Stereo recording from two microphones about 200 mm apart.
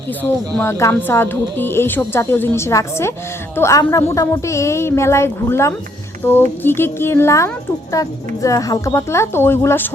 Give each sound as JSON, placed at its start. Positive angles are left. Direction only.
{"t": 0.2, "sound": "speech", "side_deg": 10}